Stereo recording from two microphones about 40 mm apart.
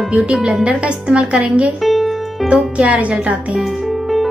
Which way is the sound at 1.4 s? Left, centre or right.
Right.